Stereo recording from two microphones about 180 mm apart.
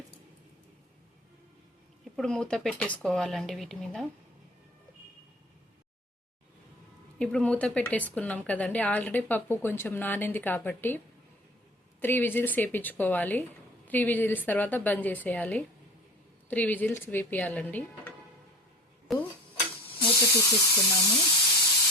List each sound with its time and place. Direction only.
2.1 s speech: 5° left (ahead or behind)
7.2 s speech: 5° left (ahead or behind)
19.1 s speech: centre (ahead or behind)
20.1 s speech: 15° left (ahead or behind)